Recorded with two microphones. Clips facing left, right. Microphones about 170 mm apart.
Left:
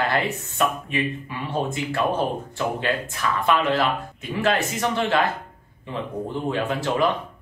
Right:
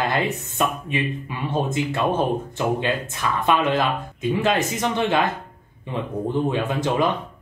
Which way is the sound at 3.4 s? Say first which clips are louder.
Right 1 dB; 20° right (ahead or behind).